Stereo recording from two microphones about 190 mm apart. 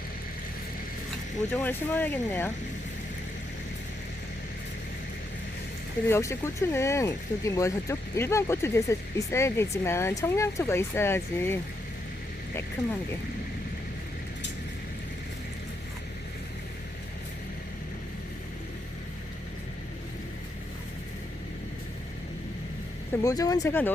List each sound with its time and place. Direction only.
1.5 s speech: 10° left (ahead or behind)
6.1 s speech: 15° left (ahead or behind)
23.2 s speech: 20° left (ahead or behind)